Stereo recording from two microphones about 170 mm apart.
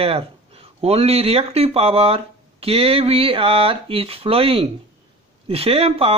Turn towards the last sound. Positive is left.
turn(degrees=-35)  # may be behind; listen again after turning